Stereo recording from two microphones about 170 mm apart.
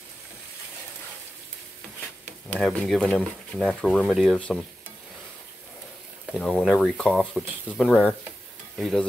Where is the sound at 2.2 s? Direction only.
10° left (ahead or behind).